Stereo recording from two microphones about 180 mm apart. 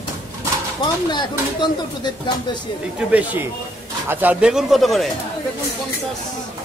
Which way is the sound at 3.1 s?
10° right (ahead or behind).